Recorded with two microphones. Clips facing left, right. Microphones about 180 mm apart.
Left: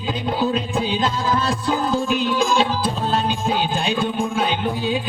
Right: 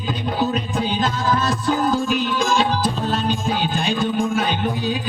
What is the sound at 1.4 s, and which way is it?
Music, 30° left (ahead or behind).